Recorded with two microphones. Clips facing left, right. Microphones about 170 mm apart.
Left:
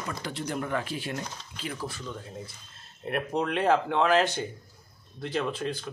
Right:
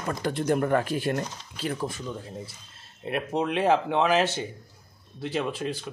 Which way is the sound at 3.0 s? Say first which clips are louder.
Right 1 dB; 5° right (ahead or behind).